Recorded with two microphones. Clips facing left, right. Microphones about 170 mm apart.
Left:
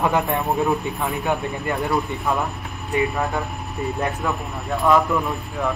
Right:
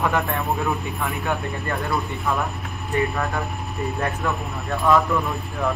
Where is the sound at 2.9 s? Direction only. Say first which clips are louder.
Left 1 dB; 20° left (ahead or behind).